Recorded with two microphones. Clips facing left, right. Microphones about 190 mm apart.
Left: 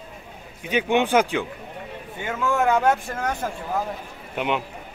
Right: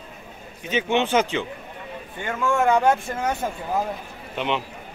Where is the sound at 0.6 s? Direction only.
10° left (ahead or behind).